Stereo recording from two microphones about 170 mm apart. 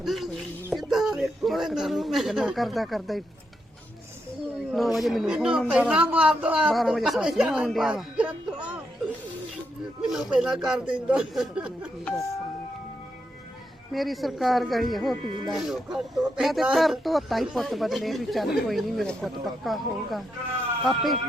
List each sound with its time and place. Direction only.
0.0 s a sound: centre (ahead or behind)
0.7 s speech: centre (ahead or behind)
4.7 s a woman's voice: centre (ahead or behind)
10.0 s a woman's voice: 5° right (ahead or behind)
13.9 s a woman's voice: centre (ahead or behind)